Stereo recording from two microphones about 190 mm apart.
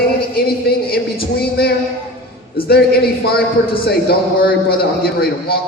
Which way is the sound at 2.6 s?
55° left (ahead or behind).